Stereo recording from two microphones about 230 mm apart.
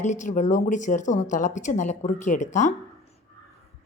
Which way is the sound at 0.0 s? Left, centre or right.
Left.